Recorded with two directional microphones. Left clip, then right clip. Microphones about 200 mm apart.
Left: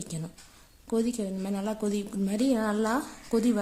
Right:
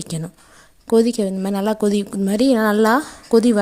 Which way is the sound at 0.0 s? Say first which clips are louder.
Right 10 dB; 40° right (ahead or behind).